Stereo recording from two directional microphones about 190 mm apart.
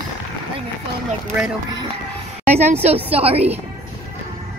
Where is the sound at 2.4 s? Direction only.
35° right (ahead or behind).